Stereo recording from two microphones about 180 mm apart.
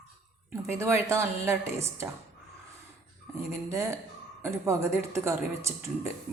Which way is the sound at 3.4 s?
15° right (ahead or behind).